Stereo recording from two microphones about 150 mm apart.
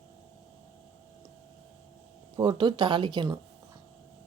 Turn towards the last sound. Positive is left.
turn(degrees=-30)  # may be behind; listen again after turning